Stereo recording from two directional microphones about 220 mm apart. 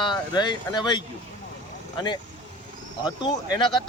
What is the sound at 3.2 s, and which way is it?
Speech, 20° left (ahead or behind).